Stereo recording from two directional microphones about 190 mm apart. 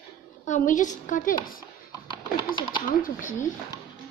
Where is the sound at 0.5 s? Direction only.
40° left (ahead or behind).